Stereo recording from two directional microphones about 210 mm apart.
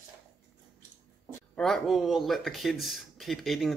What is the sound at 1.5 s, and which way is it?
Speech, centre (ahead or behind).